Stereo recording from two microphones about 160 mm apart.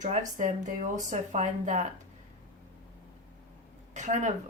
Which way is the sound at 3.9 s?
50° right (ahead or behind).